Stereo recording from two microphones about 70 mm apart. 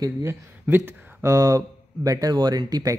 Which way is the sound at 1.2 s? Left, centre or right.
Right.